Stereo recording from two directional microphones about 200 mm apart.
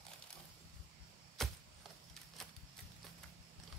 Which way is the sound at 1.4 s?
Centre (ahead or behind).